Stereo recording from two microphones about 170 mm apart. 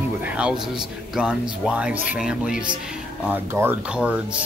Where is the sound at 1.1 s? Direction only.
5° right (ahead or behind).